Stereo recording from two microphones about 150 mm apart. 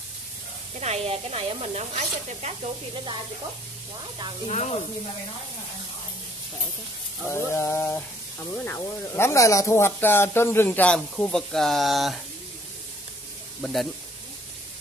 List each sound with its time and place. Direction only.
0.7 s speech: 45° right (ahead or behind)
4.5 s speech: 45° left (ahead or behind)
7.2 s speech: 15° left (ahead or behind); by 12.2 s centre (ahead or behind)
13.6 s speech: centre (ahead or behind)